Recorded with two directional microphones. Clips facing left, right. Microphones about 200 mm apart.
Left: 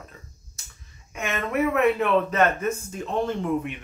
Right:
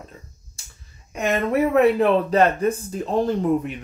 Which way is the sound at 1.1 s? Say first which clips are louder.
Right 6 dB; 35° right (ahead or behind).